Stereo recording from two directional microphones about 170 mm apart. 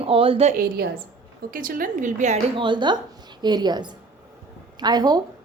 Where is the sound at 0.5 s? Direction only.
70° right (ahead or behind).